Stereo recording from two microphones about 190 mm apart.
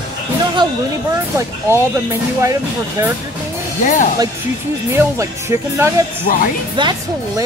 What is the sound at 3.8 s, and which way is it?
Music, 45° left (ahead or behind).